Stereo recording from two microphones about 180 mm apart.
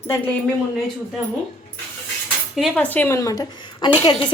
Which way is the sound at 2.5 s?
Centre (ahead or behind).